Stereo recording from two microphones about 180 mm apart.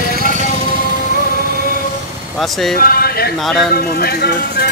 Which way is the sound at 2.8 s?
55° left (ahead or behind).